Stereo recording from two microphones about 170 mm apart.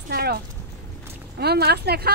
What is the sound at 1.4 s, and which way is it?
Speech, 70° right (ahead or behind).